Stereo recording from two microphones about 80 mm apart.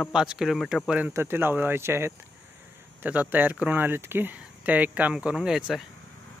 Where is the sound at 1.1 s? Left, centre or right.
Right.